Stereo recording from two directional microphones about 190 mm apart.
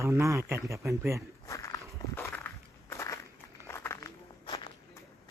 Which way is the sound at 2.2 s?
10° left (ahead or behind).